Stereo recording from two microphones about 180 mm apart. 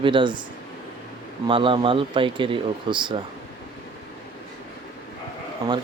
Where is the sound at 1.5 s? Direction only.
30° right (ahead or behind).